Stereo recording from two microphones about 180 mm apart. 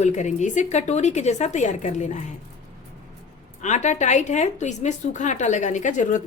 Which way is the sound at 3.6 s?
40° left (ahead or behind).